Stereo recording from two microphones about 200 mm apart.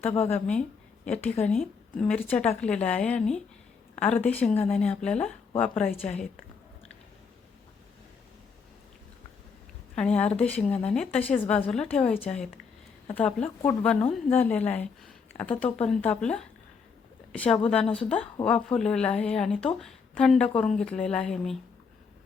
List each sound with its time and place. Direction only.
0.0 s speech: 30° left (ahead or behind)
0.3 s a woman's voice: 5° left (ahead or behind)
9.9 s a woman's voice: 5° left (ahead or behind)